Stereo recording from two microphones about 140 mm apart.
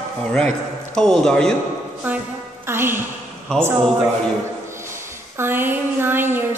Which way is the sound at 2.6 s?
15° right (ahead or behind).